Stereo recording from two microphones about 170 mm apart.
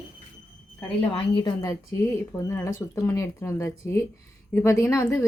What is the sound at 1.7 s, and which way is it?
Speech, 15° left (ahead or behind).